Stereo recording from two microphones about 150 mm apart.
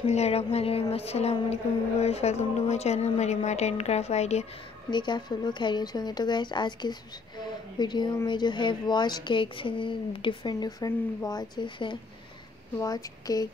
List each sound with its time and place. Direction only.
0.0 s speech: 45° left (ahead or behind)
4.9 s speech: 30° left (ahead or behind)